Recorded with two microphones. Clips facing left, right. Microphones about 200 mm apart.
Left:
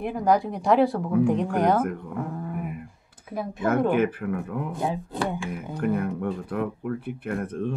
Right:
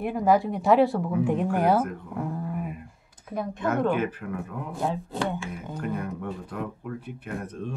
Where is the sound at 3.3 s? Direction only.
5° left (ahead or behind).